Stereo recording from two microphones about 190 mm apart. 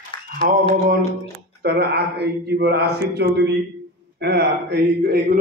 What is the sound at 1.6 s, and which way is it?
Speech, 60° right (ahead or behind).